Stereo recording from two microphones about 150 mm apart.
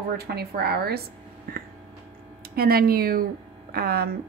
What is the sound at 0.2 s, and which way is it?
Speech, 90° right.